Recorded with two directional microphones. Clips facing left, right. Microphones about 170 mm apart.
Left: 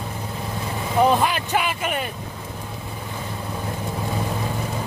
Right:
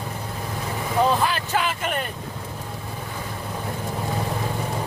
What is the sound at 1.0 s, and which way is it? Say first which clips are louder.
Speech: left 3 dB; 15° left (ahead or behind).